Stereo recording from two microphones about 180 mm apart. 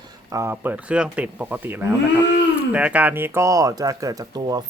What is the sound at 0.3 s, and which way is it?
Speech, 15° right (ahead or behind).